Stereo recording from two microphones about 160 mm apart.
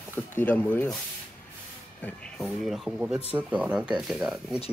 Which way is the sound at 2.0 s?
5° left (ahead or behind).